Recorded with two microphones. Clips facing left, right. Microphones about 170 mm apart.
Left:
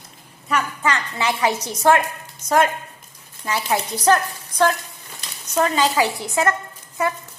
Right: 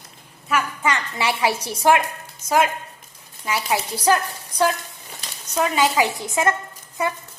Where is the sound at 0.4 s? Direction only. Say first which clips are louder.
Even; 5° right (ahead or behind).